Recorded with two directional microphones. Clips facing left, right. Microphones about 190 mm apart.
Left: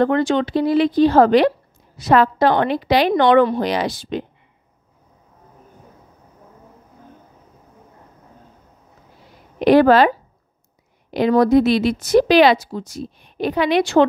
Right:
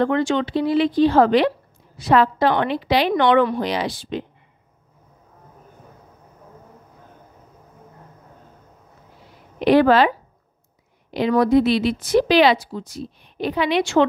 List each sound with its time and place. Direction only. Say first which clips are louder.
0.0 s speech: left 2 dB; 40° left (ahead or behind)
9.6 s speech: left 3 dB; 45° left (ahead or behind)